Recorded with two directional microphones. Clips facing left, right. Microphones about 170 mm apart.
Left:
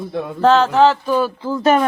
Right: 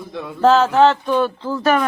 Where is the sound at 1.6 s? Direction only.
25° left (ahead or behind).